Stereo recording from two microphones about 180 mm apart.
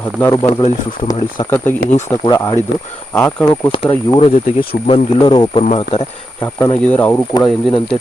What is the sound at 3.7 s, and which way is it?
Speech, 30° left (ahead or behind).